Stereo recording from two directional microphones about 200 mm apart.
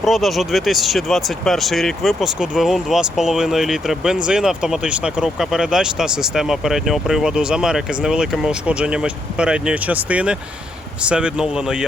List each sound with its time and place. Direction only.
0.0 s speech: centre (ahead or behind)